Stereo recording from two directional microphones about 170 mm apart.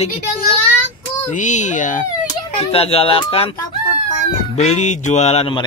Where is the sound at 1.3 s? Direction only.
45° left (ahead or behind).